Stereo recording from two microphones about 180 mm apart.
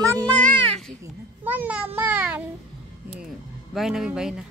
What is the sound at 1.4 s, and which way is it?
A child's voice, 10° right (ahead or behind).